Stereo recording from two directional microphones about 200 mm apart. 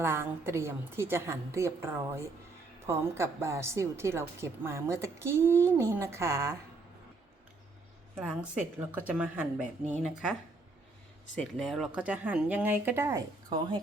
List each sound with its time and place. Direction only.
0.0 s a woman's voice: 10° right (ahead or behind)
8.1 s a woman's voice: 5° right (ahead or behind)
9.6 s a woman's voice: 35° right (ahead or behind)
10.0 s a woman's voice: centre (ahead or behind)
11.3 s a woman's voice: 5° left (ahead or behind); by 13.7 s 20° right (ahead or behind)